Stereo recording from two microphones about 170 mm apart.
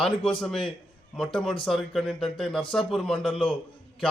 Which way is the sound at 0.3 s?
5° left (ahead or behind).